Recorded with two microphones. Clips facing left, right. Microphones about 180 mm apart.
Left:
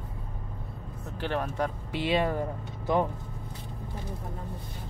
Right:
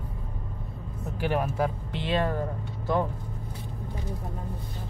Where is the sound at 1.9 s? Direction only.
10° left (ahead or behind).